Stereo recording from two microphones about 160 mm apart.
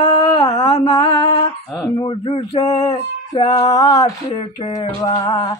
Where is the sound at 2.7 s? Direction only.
20° left (ahead or behind).